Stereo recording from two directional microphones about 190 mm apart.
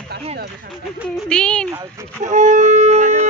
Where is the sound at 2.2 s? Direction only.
40° right (ahead or behind).